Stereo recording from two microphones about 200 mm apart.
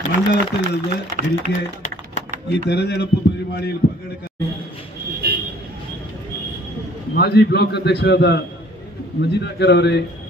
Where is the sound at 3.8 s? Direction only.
55° left (ahead or behind).